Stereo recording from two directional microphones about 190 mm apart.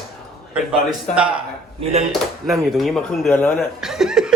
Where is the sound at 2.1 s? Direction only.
Centre (ahead or behind).